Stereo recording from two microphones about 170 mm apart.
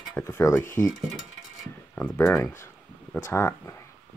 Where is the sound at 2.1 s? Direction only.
15° left (ahead or behind).